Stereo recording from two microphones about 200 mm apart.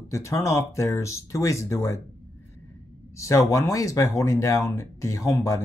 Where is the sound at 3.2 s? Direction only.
15° left (ahead or behind).